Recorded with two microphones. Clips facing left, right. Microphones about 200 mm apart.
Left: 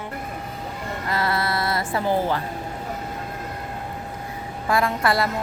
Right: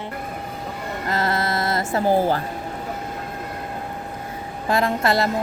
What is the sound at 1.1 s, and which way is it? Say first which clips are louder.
Music: right 1 dB; 45° right (ahead or behind).